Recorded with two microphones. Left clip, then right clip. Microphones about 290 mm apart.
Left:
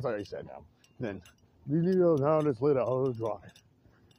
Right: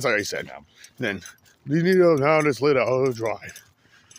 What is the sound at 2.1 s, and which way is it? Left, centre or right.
Speech, right.